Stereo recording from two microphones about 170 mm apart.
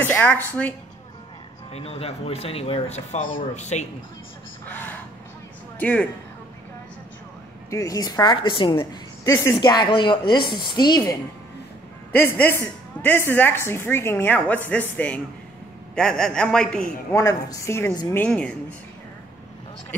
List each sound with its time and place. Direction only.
0.0 s a woman's voice: 10° left (ahead or behind)
1.7 s speech: 35° left (ahead or behind)
4.6 s speech: 10° left (ahead or behind)
7.7 s speech: 20° left (ahead or behind)
9.2 s speech: 15° left (ahead or behind)
12.1 s a woman's voice: 10° left (ahead or behind)
17.1 s a woman's voice: 20° left (ahead or behind); by 18.6 s 5° left (ahead or behind)